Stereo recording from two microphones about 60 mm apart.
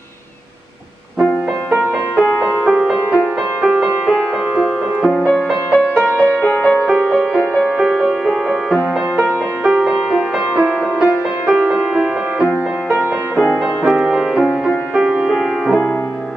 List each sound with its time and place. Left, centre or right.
2.6 s music: centre
5.9 s music: left
7.3 s music: centre
13.9 s music: centre